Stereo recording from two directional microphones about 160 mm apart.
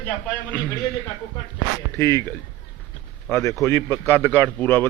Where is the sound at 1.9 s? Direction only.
15° left (ahead or behind).